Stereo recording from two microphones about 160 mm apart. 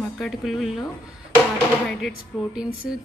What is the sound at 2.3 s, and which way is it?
Speech, 5° right (ahead or behind).